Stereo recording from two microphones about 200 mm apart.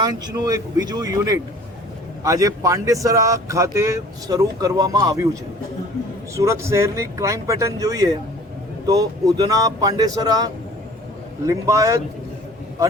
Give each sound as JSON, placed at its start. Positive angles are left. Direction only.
{"t": 0.0, "sound": "speech", "side_deg": -20}
{"t": 6.3, "sound": "speech", "side_deg": -15}